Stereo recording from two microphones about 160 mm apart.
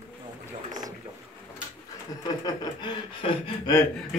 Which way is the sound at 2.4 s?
25° left (ahead or behind).